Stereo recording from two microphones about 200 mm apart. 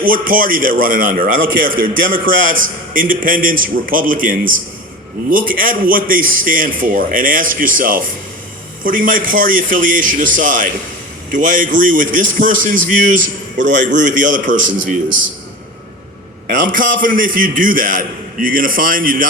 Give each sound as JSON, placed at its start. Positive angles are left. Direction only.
{"t": 0.0, "sound": "a man's voice", "side_deg": -45}
{"t": 16.5, "sound": "a man's voice", "side_deg": -45}